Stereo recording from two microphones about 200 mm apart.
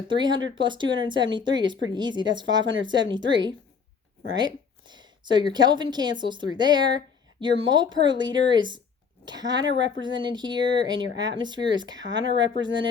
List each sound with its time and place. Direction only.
0.1 s speech: 20° right (ahead or behind)
3.2 s speech: 65° right (ahead or behind)
4.4 s speech: 20° right (ahead or behind)
11.9 s speech: 65° right (ahead or behind)
12.6 s speech: 25° right (ahead or behind)